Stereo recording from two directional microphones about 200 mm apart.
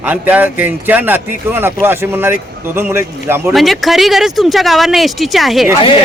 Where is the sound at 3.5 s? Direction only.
Centre (ahead or behind).